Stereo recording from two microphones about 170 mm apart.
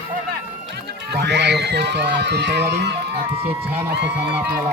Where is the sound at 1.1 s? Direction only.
85° right.